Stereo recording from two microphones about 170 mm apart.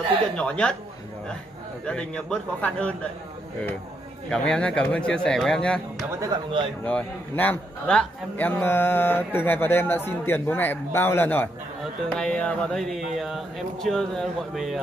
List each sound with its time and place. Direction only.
0.4 s speech: 5° left (ahead or behind)
1.9 s a man's voice: 5° left (ahead or behind)
4.3 s speech: 5° left (ahead or behind)
6.2 s speech: 25° right (ahead or behind)
6.8 s a man's voice: 10° left (ahead or behind)